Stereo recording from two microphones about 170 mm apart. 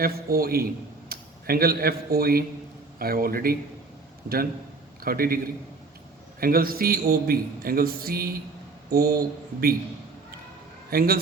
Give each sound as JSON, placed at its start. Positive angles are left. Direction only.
{"t": 0.0, "sound": "a man's voice", "side_deg": -60}
{"t": 5.0, "sound": "a man's voice", "side_deg": -60}
{"t": 6.4, "sound": "a man's voice", "side_deg": -60}
{"t": 10.9, "sound": "a man's voice", "side_deg": -60}